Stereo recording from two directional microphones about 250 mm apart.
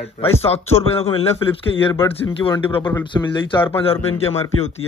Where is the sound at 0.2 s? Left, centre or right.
Left.